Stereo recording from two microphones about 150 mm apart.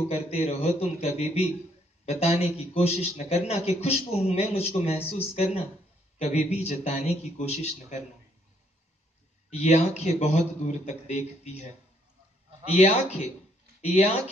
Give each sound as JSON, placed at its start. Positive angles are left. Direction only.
{"t": 0.1, "sound": "a man's voice", "side_deg": 45}
{"t": 9.5, "sound": "a man's voice", "side_deg": 50}
{"t": 12.6, "sound": "a man's voice", "side_deg": 45}